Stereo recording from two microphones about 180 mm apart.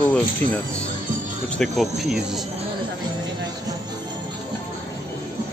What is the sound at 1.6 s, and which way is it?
Speech, centre (ahead or behind).